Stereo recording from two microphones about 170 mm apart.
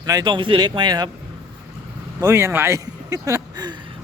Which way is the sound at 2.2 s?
15° right (ahead or behind).